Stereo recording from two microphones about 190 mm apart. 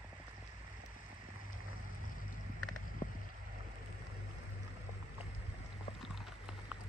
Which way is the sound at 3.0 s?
45° left (ahead or behind).